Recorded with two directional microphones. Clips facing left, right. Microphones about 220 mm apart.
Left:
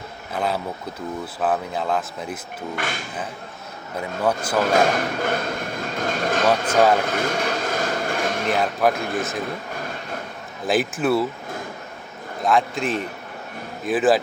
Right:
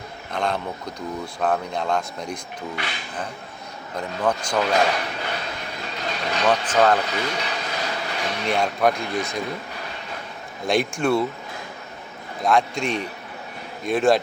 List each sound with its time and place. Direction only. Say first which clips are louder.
0.3 s speech: left 1 dB; 5° left (ahead or behind)
2.7 s speech: left 6 dB; 50° left (ahead or behind)
3.9 s speech: left 1 dB; 5° left (ahead or behind)
4.6 s speech: left 3 dB; 50° left (ahead or behind)
7.0 s vehicle: left 4 dB; 50° left (ahead or behind)
8.4 s speech: right 1 dB; 5° left (ahead or behind)
9.0 s speech: left 1 dB; 50° left (ahead or behind)
10.7 s speech: left 1 dB; 5° left (ahead or behind)
12.4 s speech: even; centre (ahead or behind)